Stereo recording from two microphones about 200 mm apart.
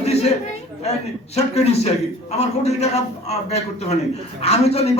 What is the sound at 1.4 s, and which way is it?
A man's voice, 30° left (ahead or behind).